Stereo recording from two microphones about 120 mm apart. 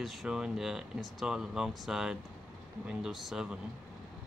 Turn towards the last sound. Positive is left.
turn(degrees=-5)  # may be behind; listen again after turning